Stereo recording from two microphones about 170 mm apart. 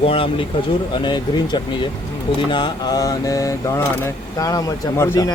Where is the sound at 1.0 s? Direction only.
25° left (ahead or behind).